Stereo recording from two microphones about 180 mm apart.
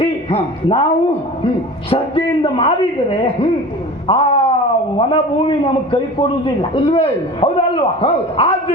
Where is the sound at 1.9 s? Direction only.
30° left (ahead or behind).